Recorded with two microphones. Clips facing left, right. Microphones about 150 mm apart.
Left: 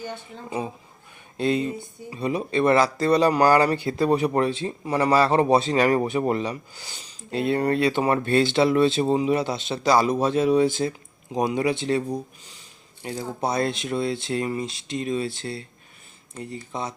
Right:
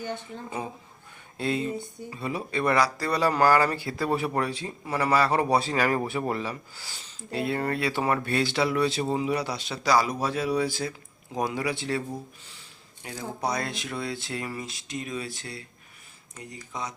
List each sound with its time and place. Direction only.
1.4 s speech: 20° left (ahead or behind)